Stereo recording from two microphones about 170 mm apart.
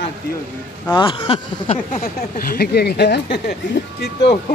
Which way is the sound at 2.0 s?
60° left (ahead or behind).